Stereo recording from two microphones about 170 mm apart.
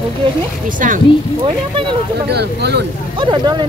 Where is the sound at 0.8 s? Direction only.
50° right (ahead or behind).